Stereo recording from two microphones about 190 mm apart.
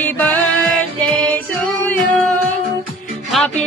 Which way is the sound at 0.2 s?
10° left (ahead or behind).